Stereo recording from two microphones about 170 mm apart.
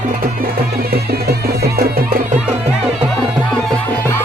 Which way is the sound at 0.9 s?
65° right (ahead or behind).